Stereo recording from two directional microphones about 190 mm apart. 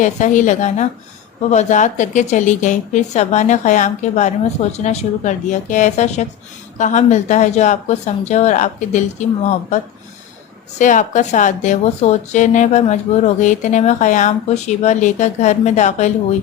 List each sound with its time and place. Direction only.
0.0 s a woman's voice: 40° left (ahead or behind)